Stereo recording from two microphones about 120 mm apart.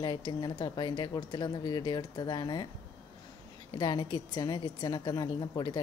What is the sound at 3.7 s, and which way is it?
Speech, 40° left (ahead or behind).